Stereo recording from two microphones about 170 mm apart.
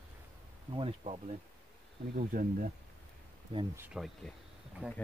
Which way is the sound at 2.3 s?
55° right (ahead or behind).